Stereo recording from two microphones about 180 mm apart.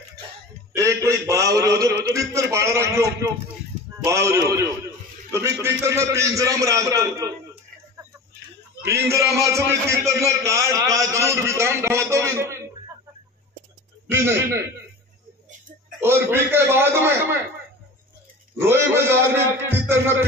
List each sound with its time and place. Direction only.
0.7 s a man's voice: 15° right (ahead or behind)
8.8 s a man's voice: 15° right (ahead or behind)
14.1 s a man's voice: 15° right (ahead or behind)
16.0 s a man's voice: 15° right (ahead or behind)
18.6 s a man's voice: 15° right (ahead or behind)